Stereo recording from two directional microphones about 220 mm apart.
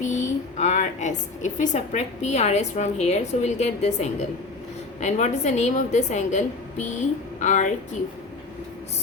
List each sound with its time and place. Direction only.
0.0 s a woman's voice: 35° left (ahead or behind)